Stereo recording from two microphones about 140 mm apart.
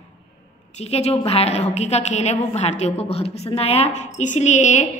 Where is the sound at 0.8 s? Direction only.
50° left (ahead or behind).